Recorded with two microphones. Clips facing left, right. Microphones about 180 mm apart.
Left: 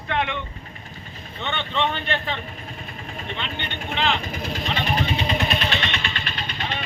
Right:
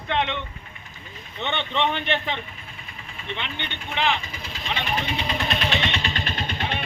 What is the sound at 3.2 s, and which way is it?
Speech, 45° left (ahead or behind).